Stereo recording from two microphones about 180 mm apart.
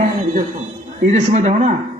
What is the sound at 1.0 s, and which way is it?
Speech, 40° right (ahead or behind).